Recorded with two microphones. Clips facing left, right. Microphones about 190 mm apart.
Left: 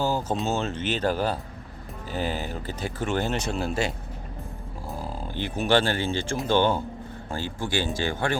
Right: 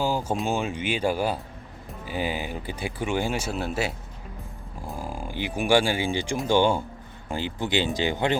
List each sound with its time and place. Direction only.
0.0 s a sound: 10° right (ahead or behind)
0.4 s speech: 10° right (ahead or behind)
4.9 s speech: 10° right (ahead or behind)